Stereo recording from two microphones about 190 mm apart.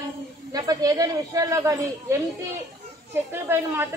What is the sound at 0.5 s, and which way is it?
A woman's voice, 20° right (ahead or behind).